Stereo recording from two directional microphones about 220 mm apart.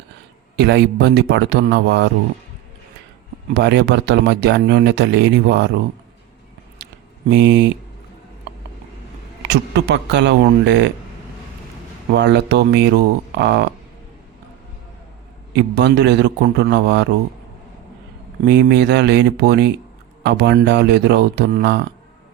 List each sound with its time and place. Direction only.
0.5 s speech: 50° right (ahead or behind)
3.5 s speech: 50° right (ahead or behind)
7.3 s speech: 50° right (ahead or behind)
9.5 s speech: 55° right (ahead or behind)
12.1 s speech: 50° right (ahead or behind)
15.5 s speech: 50° right (ahead or behind)
18.4 s speech: 50° right (ahead or behind)